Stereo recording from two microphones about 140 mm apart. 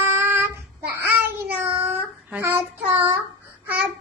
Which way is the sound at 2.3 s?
15° right (ahead or behind).